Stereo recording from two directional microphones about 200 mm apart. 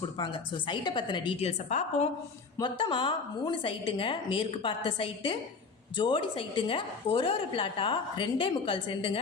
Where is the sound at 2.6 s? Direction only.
20° left (ahead or behind).